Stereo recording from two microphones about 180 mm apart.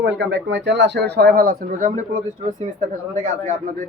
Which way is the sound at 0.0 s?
85° right.